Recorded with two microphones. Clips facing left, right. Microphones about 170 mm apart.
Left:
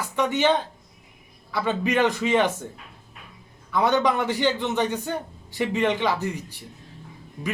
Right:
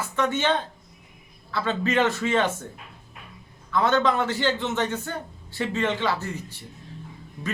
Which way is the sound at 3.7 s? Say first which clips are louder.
Left 1 dB; 15° left (ahead or behind).